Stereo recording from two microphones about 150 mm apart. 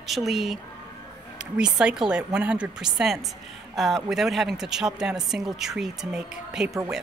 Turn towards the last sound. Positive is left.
turn(degrees=-5)  # may be behind; listen again after turning